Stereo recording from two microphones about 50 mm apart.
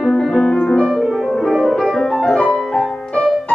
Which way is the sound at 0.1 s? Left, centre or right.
Centre.